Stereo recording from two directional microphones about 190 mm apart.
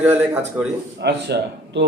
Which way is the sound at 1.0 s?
60° right (ahead or behind).